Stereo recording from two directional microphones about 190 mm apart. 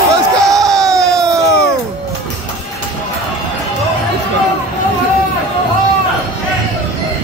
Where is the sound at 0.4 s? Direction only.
15° right (ahead or behind).